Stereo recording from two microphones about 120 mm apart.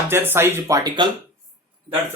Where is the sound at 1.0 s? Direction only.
40° right (ahead or behind).